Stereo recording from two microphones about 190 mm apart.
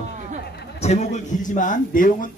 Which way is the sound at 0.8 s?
35° left (ahead or behind).